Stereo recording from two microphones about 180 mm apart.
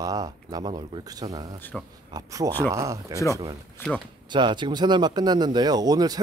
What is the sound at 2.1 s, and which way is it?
A man's voice, 20° right (ahead or behind).